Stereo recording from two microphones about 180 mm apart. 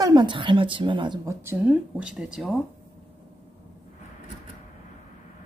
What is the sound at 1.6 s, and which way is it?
Speech, 5° right (ahead or behind).